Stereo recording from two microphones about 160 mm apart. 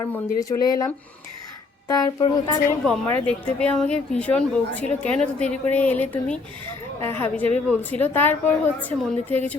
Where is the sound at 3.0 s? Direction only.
10° left (ahead or behind).